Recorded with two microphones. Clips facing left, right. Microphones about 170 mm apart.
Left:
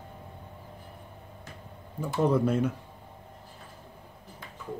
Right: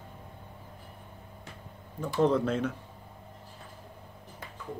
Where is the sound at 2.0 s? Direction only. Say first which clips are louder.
Even; 10° left (ahead or behind).